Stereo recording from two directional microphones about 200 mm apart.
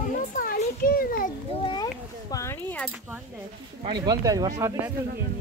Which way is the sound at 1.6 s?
20° left (ahead or behind).